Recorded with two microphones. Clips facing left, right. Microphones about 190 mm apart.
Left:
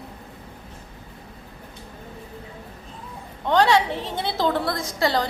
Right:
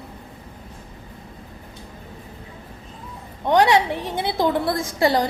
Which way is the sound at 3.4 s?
15° right (ahead or behind).